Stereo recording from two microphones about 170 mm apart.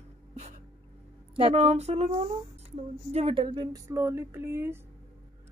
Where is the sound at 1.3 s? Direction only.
35° right (ahead or behind).